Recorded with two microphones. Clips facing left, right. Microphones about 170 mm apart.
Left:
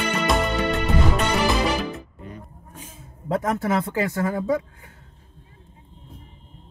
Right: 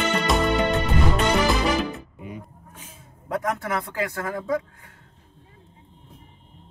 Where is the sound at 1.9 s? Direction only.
10° right (ahead or behind).